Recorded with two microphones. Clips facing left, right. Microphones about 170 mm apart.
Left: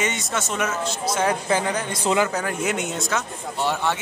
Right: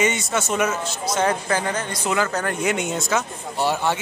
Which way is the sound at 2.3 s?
5° left (ahead or behind).